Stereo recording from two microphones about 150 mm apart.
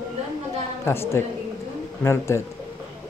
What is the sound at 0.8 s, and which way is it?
A woman's voice, 15° left (ahead or behind).